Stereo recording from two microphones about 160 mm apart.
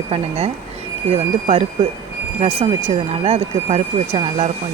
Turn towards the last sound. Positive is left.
turn(degrees=-40)  # may be behind; listen again after turning